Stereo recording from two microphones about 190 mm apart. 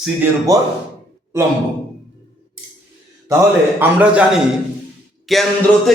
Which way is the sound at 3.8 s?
5° right (ahead or behind).